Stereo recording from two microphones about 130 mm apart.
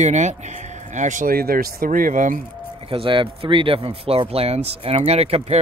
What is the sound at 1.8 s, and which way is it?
Speech, 90° right.